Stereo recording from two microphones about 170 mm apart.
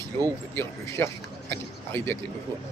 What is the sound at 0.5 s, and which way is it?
Speech, 15° left (ahead or behind).